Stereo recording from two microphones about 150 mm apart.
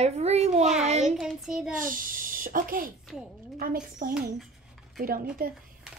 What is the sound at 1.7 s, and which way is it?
A child's voice, 65° right (ahead or behind).